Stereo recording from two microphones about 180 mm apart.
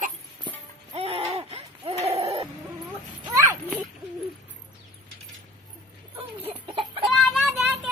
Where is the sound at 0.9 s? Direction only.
35° right (ahead or behind).